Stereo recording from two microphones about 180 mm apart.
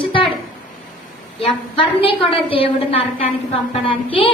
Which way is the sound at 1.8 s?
30° left (ahead or behind).